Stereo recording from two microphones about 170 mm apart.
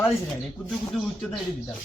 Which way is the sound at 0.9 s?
Centre (ahead or behind).